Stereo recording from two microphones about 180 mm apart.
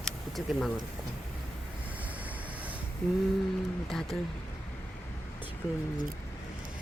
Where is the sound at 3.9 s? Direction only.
Centre (ahead or behind).